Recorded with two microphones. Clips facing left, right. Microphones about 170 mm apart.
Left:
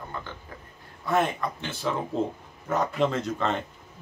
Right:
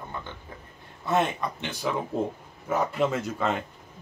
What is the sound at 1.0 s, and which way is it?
Speech, 20° right (ahead or behind).